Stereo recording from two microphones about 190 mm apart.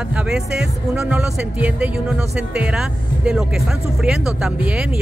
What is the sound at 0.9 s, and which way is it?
Speech, 5° right (ahead or behind).